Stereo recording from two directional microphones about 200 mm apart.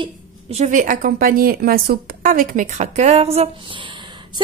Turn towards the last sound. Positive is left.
turn(degrees=-25)  # may be behind; listen again after turning